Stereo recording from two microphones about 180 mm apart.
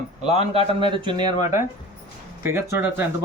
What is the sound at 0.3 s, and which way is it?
A man's voice, 35° right (ahead or behind).